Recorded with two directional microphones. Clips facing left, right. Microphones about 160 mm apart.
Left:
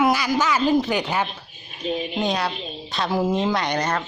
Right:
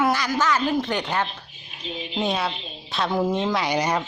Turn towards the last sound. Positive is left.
turn(degrees=-10)  # may be behind; listen again after turning